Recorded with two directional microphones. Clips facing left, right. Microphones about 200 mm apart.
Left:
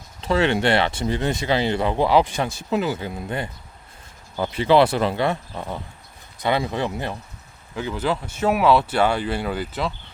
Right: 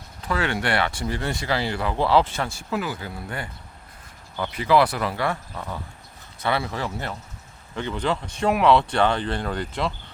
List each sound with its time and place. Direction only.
0.2 s speech: 25° left (ahead or behind)
4.5 s speech: 25° left (ahead or behind); by 9.9 s 5° left (ahead or behind)